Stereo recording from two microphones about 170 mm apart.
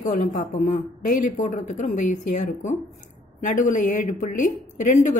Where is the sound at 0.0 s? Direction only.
50° left (ahead or behind).